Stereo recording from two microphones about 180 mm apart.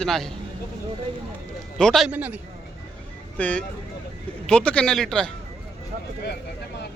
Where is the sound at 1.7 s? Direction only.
Centre (ahead or behind).